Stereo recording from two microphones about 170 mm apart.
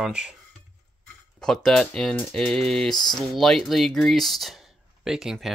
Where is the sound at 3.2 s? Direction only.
Centre (ahead or behind).